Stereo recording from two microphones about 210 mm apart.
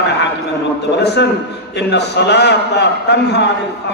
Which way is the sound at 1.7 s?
55° left (ahead or behind).